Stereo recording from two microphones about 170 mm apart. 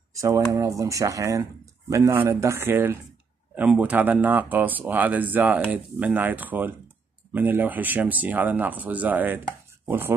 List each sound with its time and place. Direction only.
0.1 s speech: 20° right (ahead or behind)